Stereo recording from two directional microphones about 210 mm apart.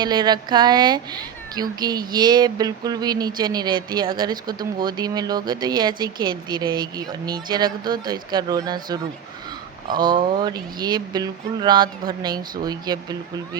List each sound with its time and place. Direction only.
0.0 s speech: 20° right (ahead or behind)